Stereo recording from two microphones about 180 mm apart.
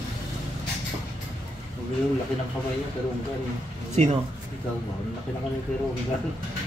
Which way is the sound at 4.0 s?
40° right (ahead or behind).